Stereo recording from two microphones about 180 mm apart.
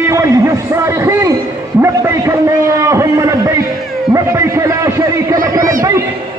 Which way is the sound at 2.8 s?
15° right (ahead or behind).